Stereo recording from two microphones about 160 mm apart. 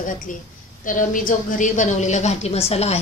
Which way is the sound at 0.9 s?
55° left (ahead or behind).